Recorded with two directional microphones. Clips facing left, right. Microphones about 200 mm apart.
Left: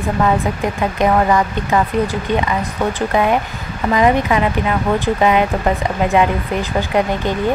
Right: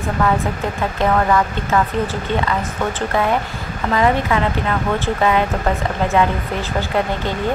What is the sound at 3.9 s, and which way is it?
Speech, 15° left (ahead or behind).